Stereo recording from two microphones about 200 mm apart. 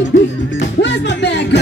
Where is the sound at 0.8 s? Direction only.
60° left (ahead or behind).